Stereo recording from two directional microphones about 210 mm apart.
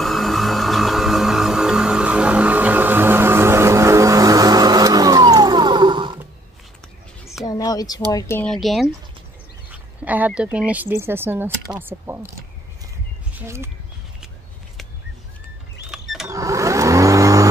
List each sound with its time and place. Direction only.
0.0 s music: centre (ahead or behind); by 6.1 s 20° right (ahead or behind)
7.4 s speech: 15° left (ahead or behind)
9.7 s speech: 5° right (ahead or behind)
15.9 s a sound: centre (ahead or behind)
16.3 s vehicle: 15° right (ahead or behind)